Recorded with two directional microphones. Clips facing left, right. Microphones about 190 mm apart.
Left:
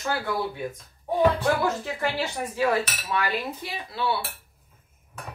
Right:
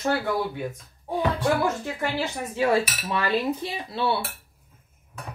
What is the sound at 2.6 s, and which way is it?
Speech, 25° right (ahead or behind).